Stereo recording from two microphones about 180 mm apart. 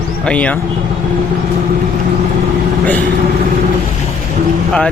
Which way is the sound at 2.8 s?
10° left (ahead or behind).